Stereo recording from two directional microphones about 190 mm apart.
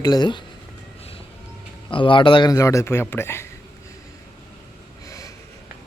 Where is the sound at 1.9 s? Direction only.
25° left (ahead or behind).